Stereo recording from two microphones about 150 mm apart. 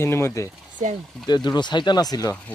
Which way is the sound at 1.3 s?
30° left (ahead or behind).